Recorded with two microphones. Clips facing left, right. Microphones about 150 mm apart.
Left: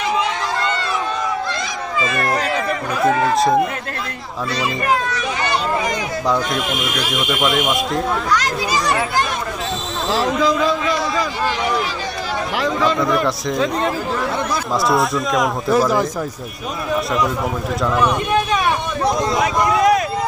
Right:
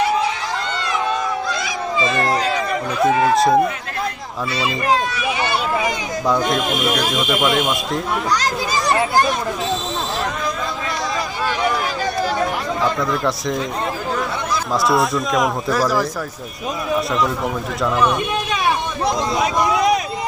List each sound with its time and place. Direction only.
2.0 s speech: 25° right (ahead or behind)
4.5 s a child's voice: 10° right (ahead or behind)
6.2 s speech: centre (ahead or behind)
10.1 s speech: 90° left
12.5 s speech: 90° left
14.7 s speech: centre (ahead or behind)